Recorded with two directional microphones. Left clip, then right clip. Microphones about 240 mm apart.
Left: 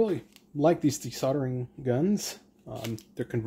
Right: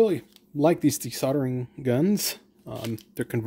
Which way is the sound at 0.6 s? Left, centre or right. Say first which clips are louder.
Right 2 dB; right.